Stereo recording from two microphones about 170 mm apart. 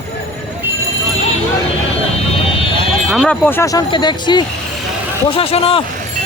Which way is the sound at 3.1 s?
Centre (ahead or behind).